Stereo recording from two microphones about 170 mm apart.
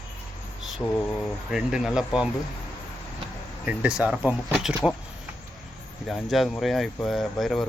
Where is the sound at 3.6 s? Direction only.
5° right (ahead or behind).